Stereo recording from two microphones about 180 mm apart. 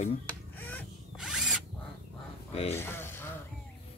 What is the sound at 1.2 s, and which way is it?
Drill, 5° right (ahead or behind).